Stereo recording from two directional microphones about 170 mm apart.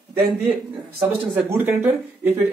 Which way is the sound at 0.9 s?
15° right (ahead or behind).